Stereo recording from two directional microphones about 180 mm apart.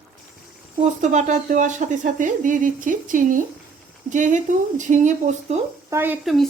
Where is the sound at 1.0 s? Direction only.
40° right (ahead or behind).